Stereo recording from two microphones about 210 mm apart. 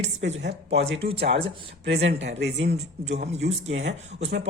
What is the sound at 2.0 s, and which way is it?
Speech, 60° right (ahead or behind).